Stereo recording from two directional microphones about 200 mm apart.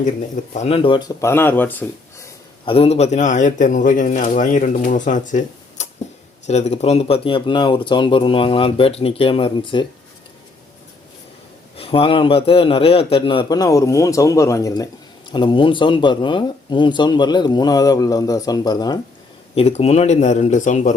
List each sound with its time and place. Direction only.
0.5 s speech: 30° left (ahead or behind); by 2.3 s 10° left (ahead or behind)
2.6 s speech: 30° left (ahead or behind)
11.8 s speech: 30° left (ahead or behind)
19.5 s speech: 30° left (ahead or behind)